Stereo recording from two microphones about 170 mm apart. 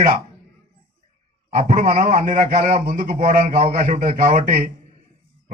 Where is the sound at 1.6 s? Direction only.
50° right (ahead or behind).